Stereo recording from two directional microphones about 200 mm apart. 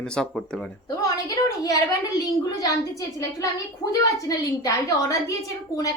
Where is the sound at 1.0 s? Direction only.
15° left (ahead or behind).